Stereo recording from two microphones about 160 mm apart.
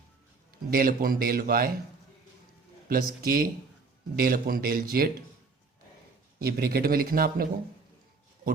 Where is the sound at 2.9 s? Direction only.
65° right (ahead or behind).